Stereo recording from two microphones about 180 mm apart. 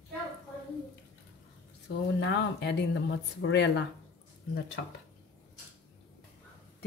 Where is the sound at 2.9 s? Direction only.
80° left.